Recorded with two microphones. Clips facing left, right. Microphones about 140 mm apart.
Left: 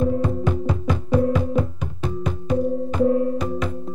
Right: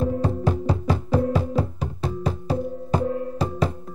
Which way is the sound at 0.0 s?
35° right (ahead or behind).